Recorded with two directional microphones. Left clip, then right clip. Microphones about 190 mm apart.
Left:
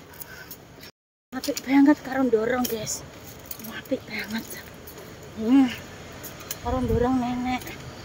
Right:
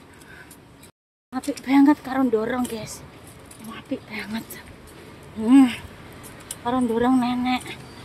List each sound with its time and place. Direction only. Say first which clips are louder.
1.3 s speech: right 2 dB; 20° right (ahead or behind)
5.5 s speech: right 4 dB; 40° right (ahead or behind)